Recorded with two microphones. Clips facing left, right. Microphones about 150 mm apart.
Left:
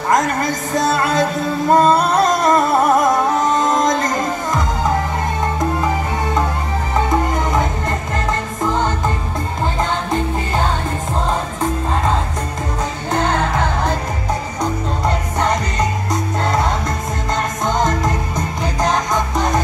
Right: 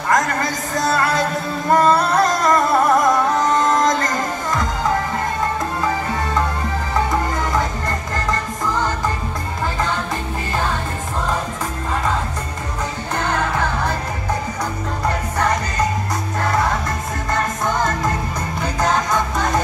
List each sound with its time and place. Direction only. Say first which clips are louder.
0.1 s a woman's voice: left 2 dB; 20° left (ahead or behind)
1.7 s music: left 2 dB; 20° left (ahead or behind)
8.3 s music: left 2 dB; 20° left (ahead or behind)
13.1 s music: left 4 dB; 20° left (ahead or behind)
17.3 s music: left 1 dB; 20° left (ahead or behind)